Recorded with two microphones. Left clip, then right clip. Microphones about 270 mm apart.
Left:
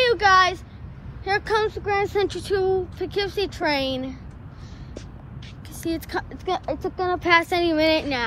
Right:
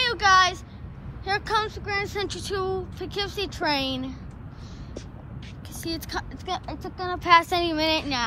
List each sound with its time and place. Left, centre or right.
0.0 s a sound: centre
1.2 s speech: centre
5.9 s speech: centre